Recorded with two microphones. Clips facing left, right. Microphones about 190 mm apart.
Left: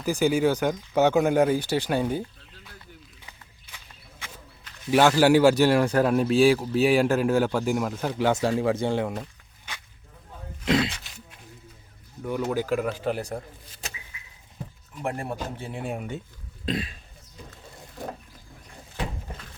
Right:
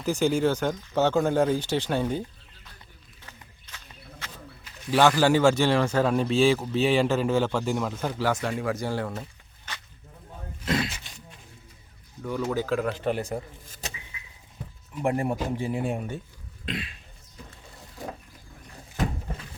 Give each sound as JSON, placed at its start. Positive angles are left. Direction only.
{"t": 0.0, "sound": "speech", "side_deg": 10}
{"t": 4.9, "sound": "speech", "side_deg": 15}
{"t": 8.2, "sound": "speech", "side_deg": 30}
{"t": 10.8, "sound": "a sound", "side_deg": 0}
{"t": 12.2, "sound": "speech", "side_deg": 15}
{"t": 15.0, "sound": "speech", "side_deg": -15}
{"t": 15.8, "sound": "a sound", "side_deg": 0}
{"t": 16.6, "sound": "cough", "side_deg": 40}